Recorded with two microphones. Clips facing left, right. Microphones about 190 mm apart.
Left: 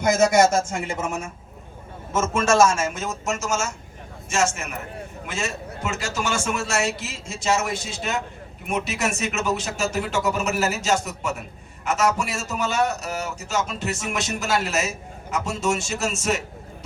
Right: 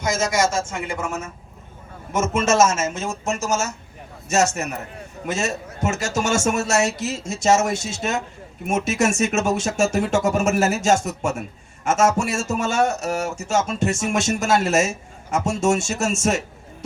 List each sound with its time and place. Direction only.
0.0 s speech: 60° left (ahead or behind)
0.9 s a woman's voice: 20° left (ahead or behind)
2.1 s a man's voice: 15° right (ahead or behind)
3.2 s speech: 35° right (ahead or behind)